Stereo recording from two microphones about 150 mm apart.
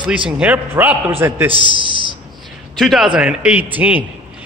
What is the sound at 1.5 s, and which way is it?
Speech, 35° right (ahead or behind).